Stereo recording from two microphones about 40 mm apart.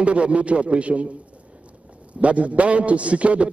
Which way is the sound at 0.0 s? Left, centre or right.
Right.